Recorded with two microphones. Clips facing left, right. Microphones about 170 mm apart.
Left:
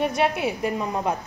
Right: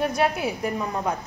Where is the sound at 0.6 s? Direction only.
10° left (ahead or behind).